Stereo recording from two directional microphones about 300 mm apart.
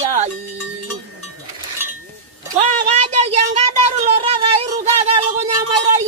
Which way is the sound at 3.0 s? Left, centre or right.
Right.